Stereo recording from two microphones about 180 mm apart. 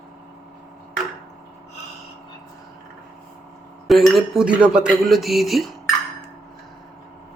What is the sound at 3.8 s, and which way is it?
Speech, centre (ahead or behind).